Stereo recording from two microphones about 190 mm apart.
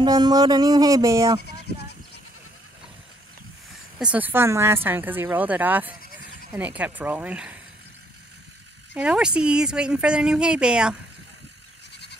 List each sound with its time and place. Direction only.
0.0 s speech: 20° right (ahead or behind)
4.0 s speech: 10° right (ahead or behind)
8.9 s speech: 5° right (ahead or behind)